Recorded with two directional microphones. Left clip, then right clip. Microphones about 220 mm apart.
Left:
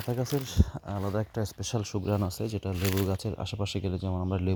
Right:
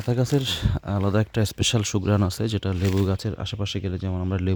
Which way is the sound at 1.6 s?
30° right (ahead or behind).